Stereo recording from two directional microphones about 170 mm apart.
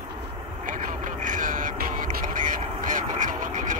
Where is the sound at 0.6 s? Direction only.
50° right (ahead or behind).